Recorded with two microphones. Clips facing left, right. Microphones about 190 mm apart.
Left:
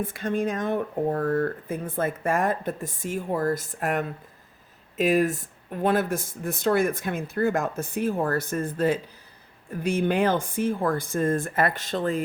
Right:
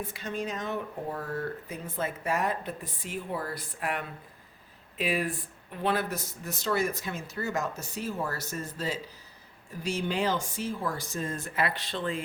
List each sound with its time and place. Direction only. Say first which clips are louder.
0.0 s speech: left 8 dB; 55° left (ahead or behind)